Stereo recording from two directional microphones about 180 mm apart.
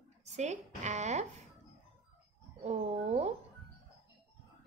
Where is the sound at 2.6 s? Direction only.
40° right (ahead or behind).